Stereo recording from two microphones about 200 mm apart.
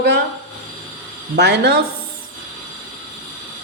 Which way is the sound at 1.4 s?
55° right (ahead or behind).